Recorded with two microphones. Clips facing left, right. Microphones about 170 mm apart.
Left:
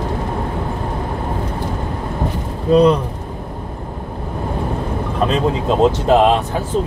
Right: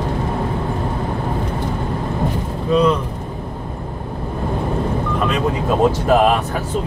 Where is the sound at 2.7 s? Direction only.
35° left (ahead or behind).